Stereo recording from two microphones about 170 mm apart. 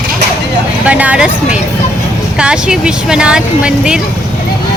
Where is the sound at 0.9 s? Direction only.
10° right (ahead or behind).